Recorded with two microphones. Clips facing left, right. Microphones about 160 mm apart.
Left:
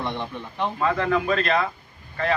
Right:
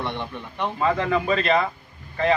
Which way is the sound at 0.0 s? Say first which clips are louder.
Even; 15° left (ahead or behind).